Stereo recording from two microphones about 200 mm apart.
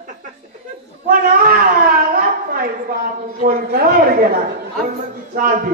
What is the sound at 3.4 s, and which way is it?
Speech, 45° right (ahead or behind).